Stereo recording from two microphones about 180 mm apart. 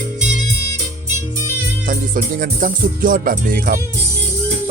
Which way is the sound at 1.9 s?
50° right (ahead or behind).